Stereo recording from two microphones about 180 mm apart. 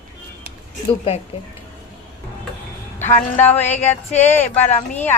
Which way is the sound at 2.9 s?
10° left (ahead or behind).